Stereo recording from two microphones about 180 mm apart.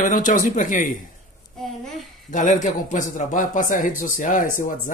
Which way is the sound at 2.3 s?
45° left (ahead or behind).